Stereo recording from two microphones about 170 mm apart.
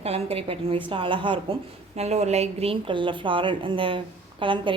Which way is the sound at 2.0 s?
40° right (ahead or behind).